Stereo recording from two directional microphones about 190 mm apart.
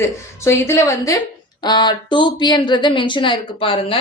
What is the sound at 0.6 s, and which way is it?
A woman's voice, 15° left (ahead or behind).